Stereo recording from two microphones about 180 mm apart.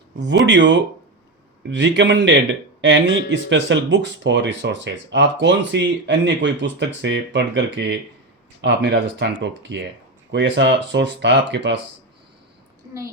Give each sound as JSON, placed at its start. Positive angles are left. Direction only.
{"t": 0.2, "sound": "speech", "side_deg": -80}